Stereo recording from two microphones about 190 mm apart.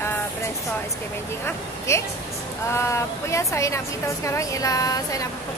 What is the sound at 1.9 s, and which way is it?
A woman's voice, 15° left (ahead or behind).